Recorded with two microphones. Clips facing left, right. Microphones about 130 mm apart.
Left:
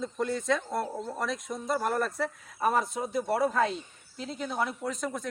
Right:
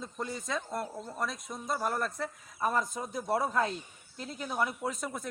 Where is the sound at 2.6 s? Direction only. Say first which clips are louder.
Left 4 dB; 70° left (ahead or behind).